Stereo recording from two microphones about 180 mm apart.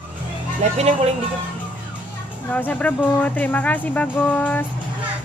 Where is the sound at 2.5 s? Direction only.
10° left (ahead or behind).